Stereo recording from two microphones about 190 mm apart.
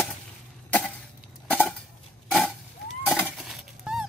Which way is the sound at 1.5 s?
10° left (ahead or behind).